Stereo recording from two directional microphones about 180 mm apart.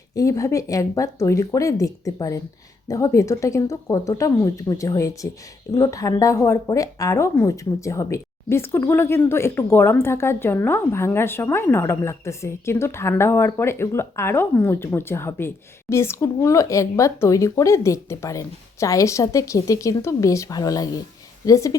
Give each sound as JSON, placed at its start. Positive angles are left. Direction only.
{"t": 0.1, "sound": "a woman's voice", "side_deg": 20}